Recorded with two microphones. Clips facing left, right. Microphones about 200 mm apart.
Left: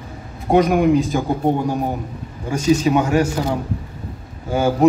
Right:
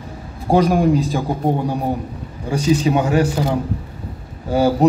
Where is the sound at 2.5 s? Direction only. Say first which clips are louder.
Left 1 dB; 35° right (ahead or behind).